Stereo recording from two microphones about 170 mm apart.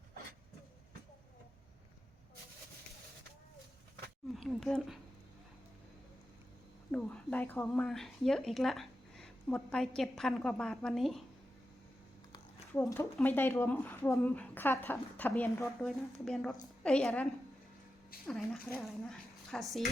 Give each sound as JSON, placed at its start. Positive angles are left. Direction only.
{"t": 4.4, "sound": "a sound", "side_deg": 0}
{"t": 6.9, "sound": "speech", "side_deg": 5}
{"t": 12.7, "sound": "a woman's voice", "side_deg": 15}
{"t": 18.3, "sound": "a woman's voice", "side_deg": 0}